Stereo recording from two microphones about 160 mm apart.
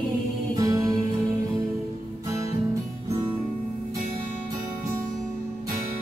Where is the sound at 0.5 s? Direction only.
20° right (ahead or behind).